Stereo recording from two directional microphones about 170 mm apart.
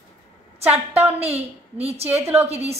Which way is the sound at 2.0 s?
15° right (ahead or behind).